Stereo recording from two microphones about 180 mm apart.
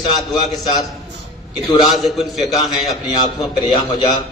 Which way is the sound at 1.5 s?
20° left (ahead or behind).